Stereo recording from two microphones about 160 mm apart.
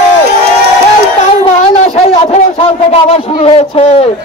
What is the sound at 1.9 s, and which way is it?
Wind instrument, 40° left (ahead or behind).